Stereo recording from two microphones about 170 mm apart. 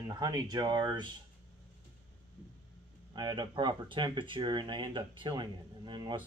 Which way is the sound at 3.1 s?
25° right (ahead or behind).